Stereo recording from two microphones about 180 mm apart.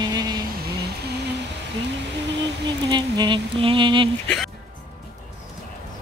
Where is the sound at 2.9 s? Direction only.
25° right (ahead or behind).